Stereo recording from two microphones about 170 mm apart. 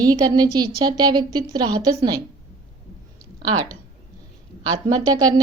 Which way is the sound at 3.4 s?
25° right (ahead or behind).